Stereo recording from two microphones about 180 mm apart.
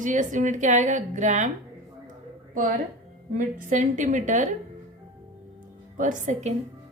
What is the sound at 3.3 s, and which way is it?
A woman's voice, 45° right (ahead or behind).